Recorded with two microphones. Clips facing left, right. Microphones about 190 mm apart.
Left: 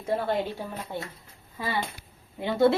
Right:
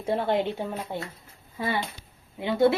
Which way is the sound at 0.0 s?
25° right (ahead or behind).